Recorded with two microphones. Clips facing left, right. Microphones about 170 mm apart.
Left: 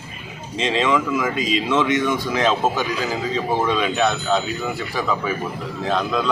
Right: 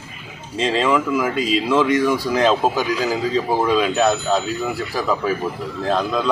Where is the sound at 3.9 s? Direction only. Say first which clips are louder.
Right 3 dB; 40° right (ahead or behind).